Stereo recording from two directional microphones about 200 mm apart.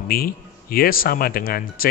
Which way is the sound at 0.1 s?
50° left (ahead or behind).